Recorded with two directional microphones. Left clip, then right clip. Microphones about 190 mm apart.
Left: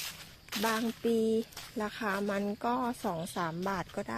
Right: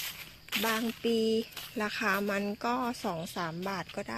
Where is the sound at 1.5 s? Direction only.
10° right (ahead or behind).